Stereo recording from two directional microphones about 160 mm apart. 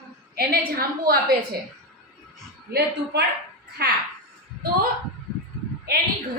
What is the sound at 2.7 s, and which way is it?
Speech, 85° right.